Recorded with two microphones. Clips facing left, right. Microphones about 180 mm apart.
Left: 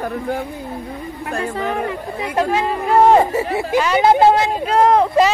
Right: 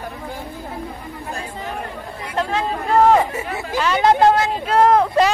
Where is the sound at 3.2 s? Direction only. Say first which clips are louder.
Left 6 dB; 35° left (ahead or behind).